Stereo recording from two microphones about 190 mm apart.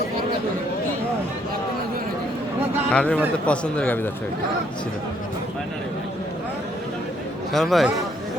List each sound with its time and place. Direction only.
2.9 s a man's voice: 5° left (ahead or behind)
7.5 s a man's voice: centre (ahead or behind)